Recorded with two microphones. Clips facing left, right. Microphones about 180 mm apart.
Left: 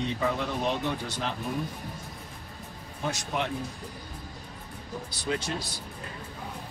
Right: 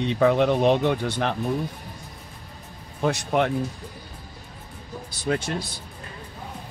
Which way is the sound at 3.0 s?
60° right (ahead or behind).